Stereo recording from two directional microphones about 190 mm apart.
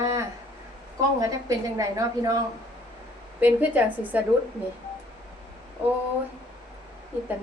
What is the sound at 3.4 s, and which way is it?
Speech, 10° right (ahead or behind).